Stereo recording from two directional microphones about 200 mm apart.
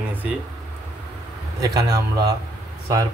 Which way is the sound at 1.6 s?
20° right (ahead or behind).